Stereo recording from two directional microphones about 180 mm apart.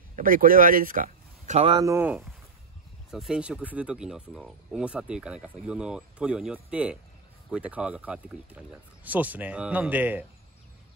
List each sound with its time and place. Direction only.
0.1 s speech: 50° right (ahead or behind)
1.7 s speech: 20° right (ahead or behind)